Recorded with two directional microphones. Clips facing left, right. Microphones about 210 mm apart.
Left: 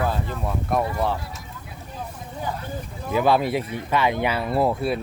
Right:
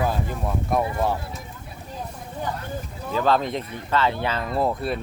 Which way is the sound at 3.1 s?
10° left (ahead or behind).